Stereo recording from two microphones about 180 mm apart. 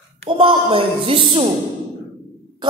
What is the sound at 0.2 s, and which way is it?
Speech, 30° right (ahead or behind).